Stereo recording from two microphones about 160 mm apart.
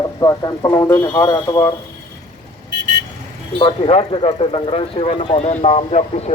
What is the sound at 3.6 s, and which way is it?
Speech, 35° left (ahead or behind).